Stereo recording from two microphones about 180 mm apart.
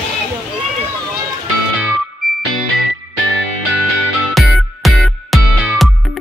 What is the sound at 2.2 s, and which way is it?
Music, centre (ahead or behind).